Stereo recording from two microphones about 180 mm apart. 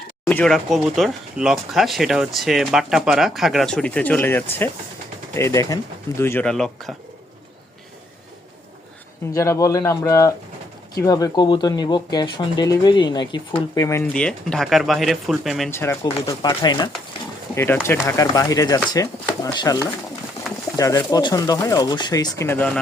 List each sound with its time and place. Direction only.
0.3 s speech: 5° left (ahead or behind)
9.3 s speech: 15° left (ahead or behind)
14.1 s speech: 5° left (ahead or behind)
15.7 s speech: 15° left (ahead or behind)